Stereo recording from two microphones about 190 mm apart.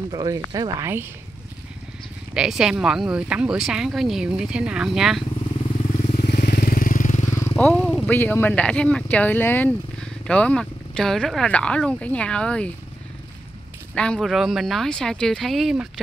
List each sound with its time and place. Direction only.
0.1 s speech: 20° right (ahead or behind)
2.3 s speech: centre (ahead or behind)
5.6 s motorcycle: 30° left (ahead or behind)
6.2 s vehicle: 55° left (ahead or behind)
7.3 s speech: 10° left (ahead or behind)
13.9 s speech: 5° left (ahead or behind)